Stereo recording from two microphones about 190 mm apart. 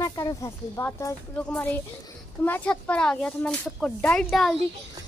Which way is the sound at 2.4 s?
10° left (ahead or behind).